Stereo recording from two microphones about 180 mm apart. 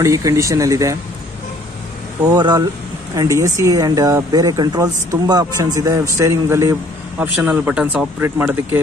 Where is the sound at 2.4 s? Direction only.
25° right (ahead or behind).